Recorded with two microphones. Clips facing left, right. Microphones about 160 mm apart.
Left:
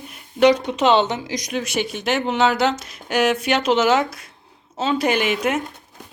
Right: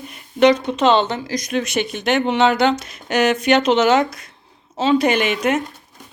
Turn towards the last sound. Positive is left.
turn(degrees=5)  # may be behind; listen again after turning